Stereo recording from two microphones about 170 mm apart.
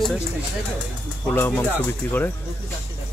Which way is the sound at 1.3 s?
10° left (ahead or behind).